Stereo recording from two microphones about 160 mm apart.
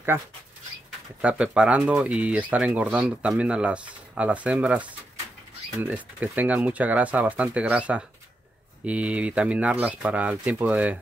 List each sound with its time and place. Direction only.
0.1 s speech: 15° right (ahead or behind)